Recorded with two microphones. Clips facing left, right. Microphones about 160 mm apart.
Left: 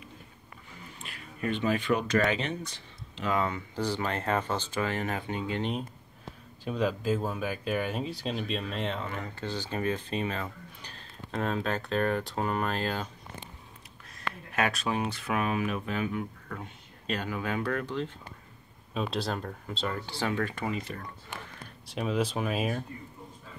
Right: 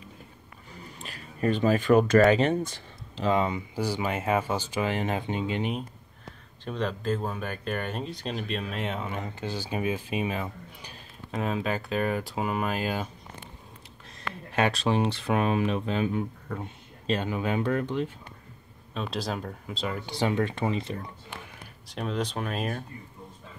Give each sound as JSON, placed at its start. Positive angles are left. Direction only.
{"t": 1.0, "sound": "speech", "side_deg": -40}
{"t": 3.3, "sound": "speech", "side_deg": -20}
{"t": 5.6, "sound": "speech", "side_deg": -5}
{"t": 6.6, "sound": "speech", "side_deg": 5}
{"t": 14.5, "sound": "speech", "side_deg": -30}
{"t": 18.9, "sound": "speech", "side_deg": 0}
{"t": 20.1, "sound": "speech", "side_deg": -20}
{"t": 21.8, "sound": "speech", "side_deg": 0}